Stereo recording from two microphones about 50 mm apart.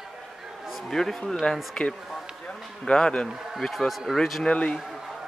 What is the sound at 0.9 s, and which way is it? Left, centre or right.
Speech, centre.